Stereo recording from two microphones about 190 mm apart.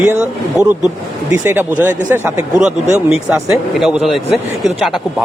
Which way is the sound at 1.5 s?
10° right (ahead or behind).